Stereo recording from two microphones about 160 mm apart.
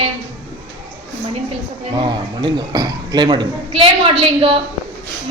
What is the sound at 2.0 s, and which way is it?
Speech, 30° right (ahead or behind).